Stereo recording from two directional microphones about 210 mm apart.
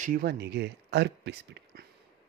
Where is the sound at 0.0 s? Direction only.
45° right (ahead or behind).